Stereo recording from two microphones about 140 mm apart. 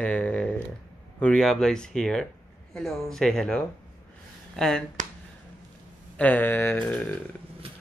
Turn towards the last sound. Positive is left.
turn(degrees=10)  # may be behind; listen again after turning